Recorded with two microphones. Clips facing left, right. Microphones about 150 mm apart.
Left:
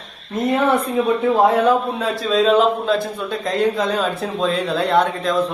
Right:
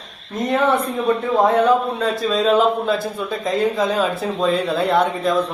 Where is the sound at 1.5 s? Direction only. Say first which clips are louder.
Even; centre (ahead or behind).